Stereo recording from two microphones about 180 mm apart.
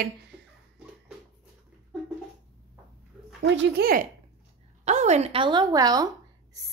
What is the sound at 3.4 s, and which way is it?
Speech, 80° right.